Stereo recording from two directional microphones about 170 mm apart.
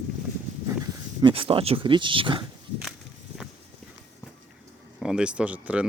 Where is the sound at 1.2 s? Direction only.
30° right (ahead or behind).